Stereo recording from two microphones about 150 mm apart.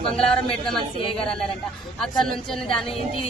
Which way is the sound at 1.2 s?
5° left (ahead or behind).